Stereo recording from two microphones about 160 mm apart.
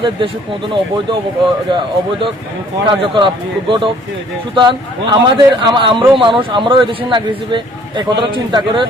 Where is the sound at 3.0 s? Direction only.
30° right (ahead or behind).